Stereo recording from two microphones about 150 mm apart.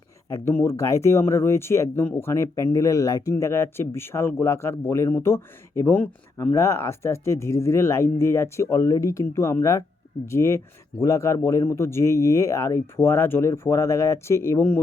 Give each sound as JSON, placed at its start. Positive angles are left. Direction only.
{"t": 0.3, "sound": "speech", "side_deg": 15}